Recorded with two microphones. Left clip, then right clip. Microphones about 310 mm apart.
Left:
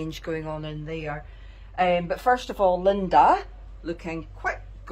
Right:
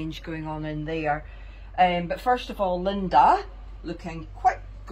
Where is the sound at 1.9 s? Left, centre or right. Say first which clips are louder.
Left 2 dB; centre.